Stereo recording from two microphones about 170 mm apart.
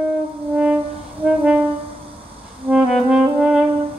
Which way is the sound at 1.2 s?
10° right (ahead or behind).